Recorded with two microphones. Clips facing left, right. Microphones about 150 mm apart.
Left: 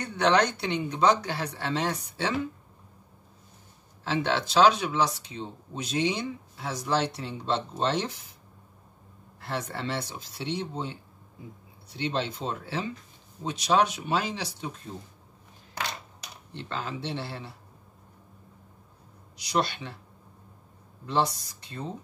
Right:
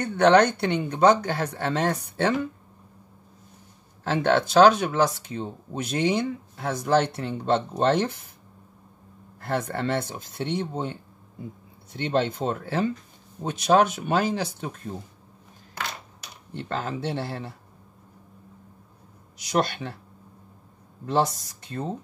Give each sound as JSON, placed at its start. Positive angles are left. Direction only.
{"t": 0.0, "sound": "speech", "side_deg": -55}
{"t": 4.0, "sound": "speech", "side_deg": -50}
{"t": 9.4, "sound": "speech", "side_deg": -50}
{"t": 16.5, "sound": "speech", "side_deg": -45}
{"t": 19.3, "sound": "speech", "side_deg": -50}
{"t": 21.0, "sound": "speech", "side_deg": -50}